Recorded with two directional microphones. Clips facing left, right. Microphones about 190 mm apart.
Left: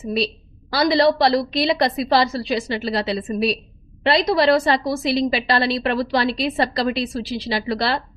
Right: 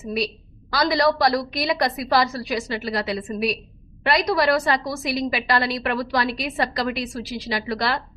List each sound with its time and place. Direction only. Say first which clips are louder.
0.7 s a woman's voice: left 4 dB; 30° left (ahead or behind)